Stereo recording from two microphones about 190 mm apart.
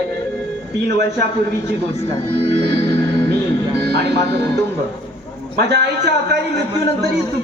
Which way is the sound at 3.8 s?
60° right (ahead or behind).